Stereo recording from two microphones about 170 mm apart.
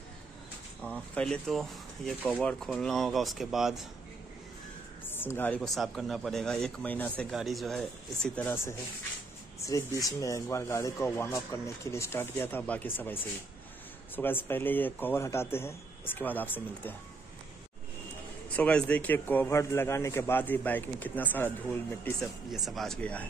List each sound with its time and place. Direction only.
0.8 s speech: 5° left (ahead or behind)
5.0 s speech: 10° left (ahead or behind)
9.6 s speech: 20° left (ahead or behind)
18.6 s speech: 5° left (ahead or behind)
22.2 s speech: centre (ahead or behind)